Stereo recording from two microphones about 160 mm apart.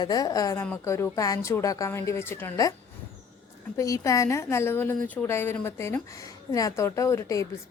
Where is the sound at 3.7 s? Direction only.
20° left (ahead or behind).